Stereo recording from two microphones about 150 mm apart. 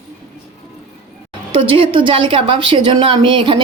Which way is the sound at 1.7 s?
35° right (ahead or behind).